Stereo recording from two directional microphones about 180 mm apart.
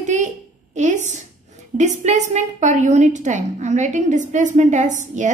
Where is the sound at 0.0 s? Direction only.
40° right (ahead or behind).